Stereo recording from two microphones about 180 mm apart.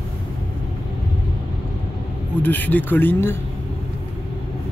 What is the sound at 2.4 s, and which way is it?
Speech, 10° left (ahead or behind).